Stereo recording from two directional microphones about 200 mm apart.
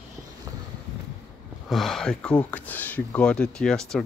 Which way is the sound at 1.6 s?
Centre (ahead or behind).